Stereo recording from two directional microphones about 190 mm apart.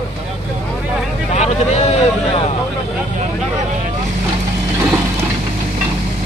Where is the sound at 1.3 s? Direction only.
35° left (ahead or behind).